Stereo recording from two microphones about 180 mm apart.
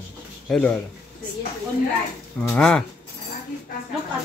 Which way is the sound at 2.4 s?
5° left (ahead or behind).